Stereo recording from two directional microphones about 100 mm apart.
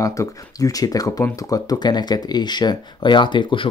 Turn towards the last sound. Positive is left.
turn(degrees=55)  # may be behind; listen again after turning